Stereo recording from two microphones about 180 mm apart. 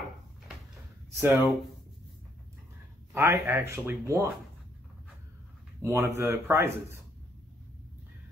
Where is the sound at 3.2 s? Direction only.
15° right (ahead or behind).